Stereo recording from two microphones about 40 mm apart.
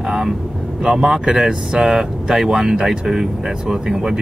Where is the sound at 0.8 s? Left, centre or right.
Centre.